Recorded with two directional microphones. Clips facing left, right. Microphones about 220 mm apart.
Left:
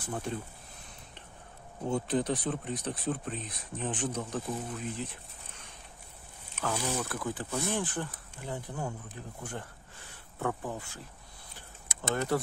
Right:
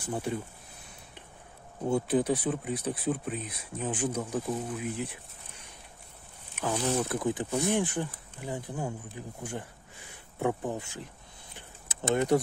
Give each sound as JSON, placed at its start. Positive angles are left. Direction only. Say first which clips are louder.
{"t": 0.0, "sound": "speech", "louder": "right 3 dB", "side_deg": -10}
{"t": 1.9, "sound": "speech", "louder": "right 4 dB", "side_deg": -10}
{"t": 6.5, "sound": "speech", "louder": "right 4 dB", "side_deg": -15}
{"t": 12.1, "sound": "speech", "louder": "right 5 dB", "side_deg": -20}